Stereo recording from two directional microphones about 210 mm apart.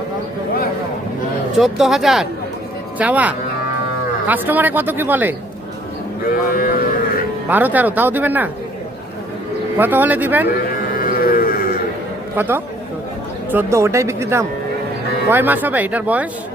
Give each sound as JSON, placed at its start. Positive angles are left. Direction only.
{"t": 1.5, "sound": "speech", "side_deg": 0}
{"t": 6.5, "sound": "speech", "side_deg": 45}
{"t": 7.4, "sound": "speech", "side_deg": -10}
{"t": 9.7, "sound": "speech", "side_deg": -10}
{"t": 10.9, "sound": "a sound", "side_deg": 40}
{"t": 12.4, "sound": "speech", "side_deg": -10}